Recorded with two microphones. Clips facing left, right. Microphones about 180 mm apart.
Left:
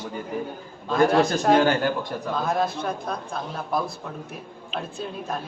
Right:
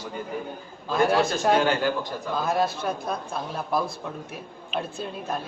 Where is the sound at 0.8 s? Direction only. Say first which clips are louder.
Left 3 dB; centre (ahead or behind).